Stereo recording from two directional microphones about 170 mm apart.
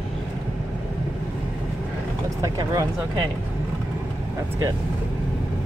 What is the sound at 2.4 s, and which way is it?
Vehicle, 20° right (ahead or behind).